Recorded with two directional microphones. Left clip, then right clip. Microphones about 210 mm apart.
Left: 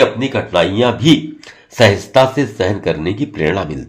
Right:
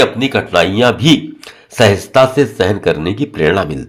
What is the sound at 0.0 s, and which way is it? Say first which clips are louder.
Speech: right 1 dB; 35° right (ahead or behind).